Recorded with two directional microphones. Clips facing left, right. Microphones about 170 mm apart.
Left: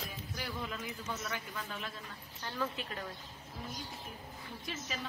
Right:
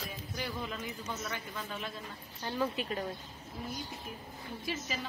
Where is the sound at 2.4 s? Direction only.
20° right (ahead or behind).